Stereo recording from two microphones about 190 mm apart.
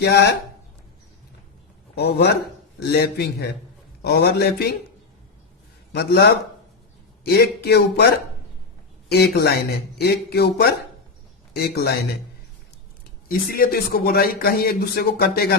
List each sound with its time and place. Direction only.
0.0 s speech: 60° left (ahead or behind)
2.0 s speech: 60° left (ahead or behind)
5.9 s speech: 60° left (ahead or behind)
11.5 s speech: 55° left (ahead or behind)
13.2 s a man's voice: 50° left (ahead or behind)